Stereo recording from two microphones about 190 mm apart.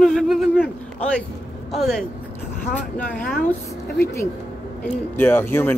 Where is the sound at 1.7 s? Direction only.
Centre (ahead or behind).